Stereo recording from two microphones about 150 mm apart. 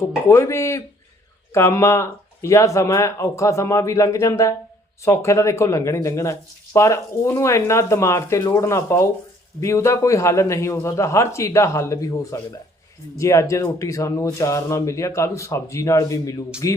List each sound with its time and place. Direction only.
0.0 s speech: 20° left (ahead or behind)